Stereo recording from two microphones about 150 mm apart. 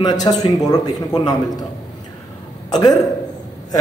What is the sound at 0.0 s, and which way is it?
Speech, 25° left (ahead or behind).